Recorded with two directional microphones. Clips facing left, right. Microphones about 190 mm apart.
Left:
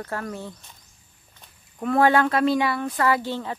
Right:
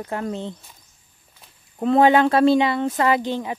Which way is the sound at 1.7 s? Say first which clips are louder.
Right 4 dB; 25° right (ahead or behind).